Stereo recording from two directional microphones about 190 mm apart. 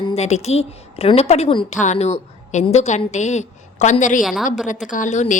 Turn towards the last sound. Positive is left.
turn(degrees=40)  # may be behind; listen again after turning